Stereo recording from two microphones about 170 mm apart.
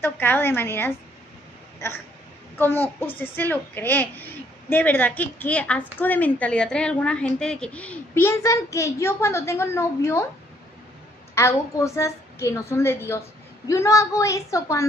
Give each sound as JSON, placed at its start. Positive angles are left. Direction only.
{"t": 0.0, "sound": "a woman's voice", "side_deg": 10}
{"t": 2.5, "sound": "a woman's voice", "side_deg": 10}
{"t": 11.3, "sound": "a woman's voice", "side_deg": 15}